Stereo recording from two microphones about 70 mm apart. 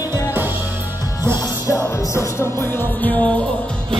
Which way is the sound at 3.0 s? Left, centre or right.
Left.